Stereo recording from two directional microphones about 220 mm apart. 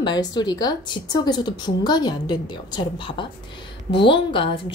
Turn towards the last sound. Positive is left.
turn(degrees=20)  # may be behind; listen again after turning